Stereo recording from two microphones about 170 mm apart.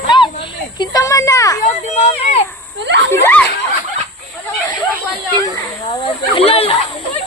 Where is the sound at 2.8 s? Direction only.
90° right.